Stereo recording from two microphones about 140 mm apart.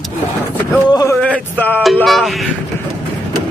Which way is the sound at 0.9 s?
25° left (ahead or behind).